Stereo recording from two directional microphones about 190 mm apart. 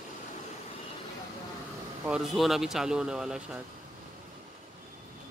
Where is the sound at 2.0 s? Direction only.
Centre (ahead or behind).